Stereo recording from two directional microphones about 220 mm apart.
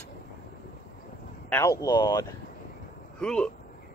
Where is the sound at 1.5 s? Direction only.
15° left (ahead or behind).